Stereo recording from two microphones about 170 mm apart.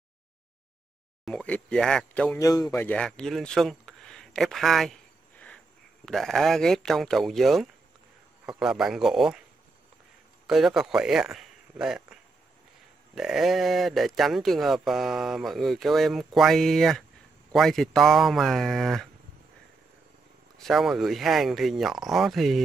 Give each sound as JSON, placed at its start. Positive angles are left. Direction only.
{"t": 1.2, "sound": "speech", "side_deg": 5}
{"t": 2.3, "sound": "a man's voice", "side_deg": 20}
{"t": 2.8, "sound": "speech", "side_deg": 10}
{"t": 6.0, "sound": "speech", "side_deg": 0}
{"t": 10.4, "sound": "speech", "side_deg": 0}
{"t": 20.5, "sound": "speech", "side_deg": 0}